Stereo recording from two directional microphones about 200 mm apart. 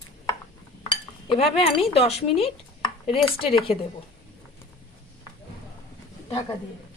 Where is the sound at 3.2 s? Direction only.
25° left (ahead or behind).